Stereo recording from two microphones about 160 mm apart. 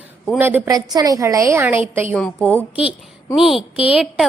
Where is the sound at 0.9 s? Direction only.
25° right (ahead or behind).